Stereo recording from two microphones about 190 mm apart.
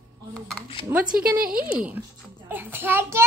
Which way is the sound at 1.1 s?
50° right (ahead or behind).